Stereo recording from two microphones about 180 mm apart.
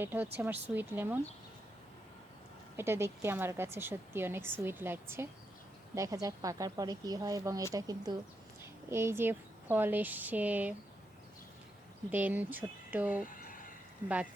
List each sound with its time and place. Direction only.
0.0 s a woman's voice: 10° right (ahead or behind)
2.7 s a woman's voice: 15° right (ahead or behind)
12.1 s a woman's voice: 10° right (ahead or behind)